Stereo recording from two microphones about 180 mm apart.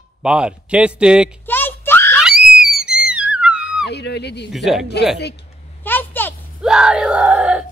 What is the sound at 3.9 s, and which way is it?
Speech, 70° left (ahead or behind).